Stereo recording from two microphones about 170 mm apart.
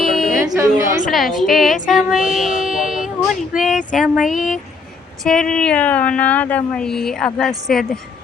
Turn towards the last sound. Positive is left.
turn(degrees=0)  # may be behind; listen again after turning